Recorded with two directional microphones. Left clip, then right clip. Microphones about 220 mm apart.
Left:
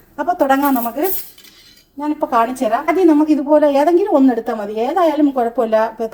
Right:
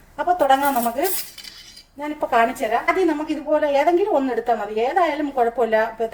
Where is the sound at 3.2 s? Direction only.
25° left (ahead or behind).